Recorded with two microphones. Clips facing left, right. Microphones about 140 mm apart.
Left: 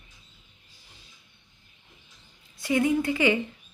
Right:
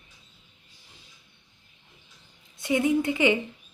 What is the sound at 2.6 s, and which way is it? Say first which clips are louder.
Speech: even; 20° right (ahead or behind).